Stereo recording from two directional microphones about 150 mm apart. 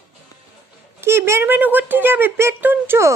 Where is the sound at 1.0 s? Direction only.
15° right (ahead or behind).